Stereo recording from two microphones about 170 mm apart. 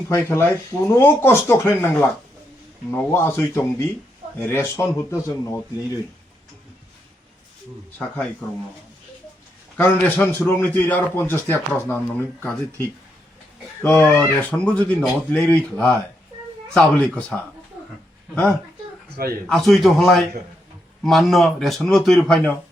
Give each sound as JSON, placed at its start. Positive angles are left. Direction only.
{"t": 0.1, "sound": "a man's voice", "side_deg": 15}
{"t": 7.9, "sound": "a man's voice", "side_deg": 10}
{"t": 9.7, "sound": "a man's voice", "side_deg": 10}
{"t": 13.8, "sound": "a man's voice", "side_deg": 10}
{"t": 19.1, "sound": "a man's voice", "side_deg": -60}
{"t": 19.5, "sound": "speech", "side_deg": 0}